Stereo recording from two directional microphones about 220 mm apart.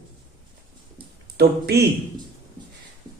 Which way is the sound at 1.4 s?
45° right (ahead or behind).